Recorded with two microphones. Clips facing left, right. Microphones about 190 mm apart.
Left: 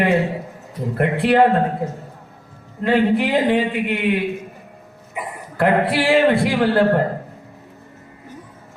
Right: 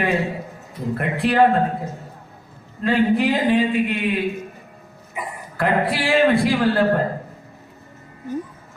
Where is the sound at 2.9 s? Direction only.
65° left (ahead or behind).